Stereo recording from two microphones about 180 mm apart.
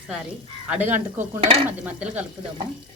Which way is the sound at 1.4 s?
30° right (ahead or behind).